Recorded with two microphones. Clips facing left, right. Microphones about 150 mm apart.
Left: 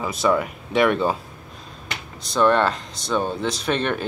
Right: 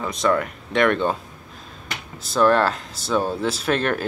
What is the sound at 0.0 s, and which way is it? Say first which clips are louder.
Speech: even; 5° left (ahead or behind).